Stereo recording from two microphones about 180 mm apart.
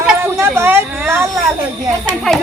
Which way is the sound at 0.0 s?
10° right (ahead or behind).